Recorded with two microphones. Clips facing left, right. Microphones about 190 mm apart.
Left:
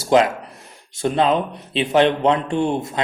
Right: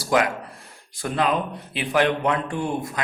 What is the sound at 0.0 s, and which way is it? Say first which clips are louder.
Speech: left 5 dB; 25° left (ahead or behind).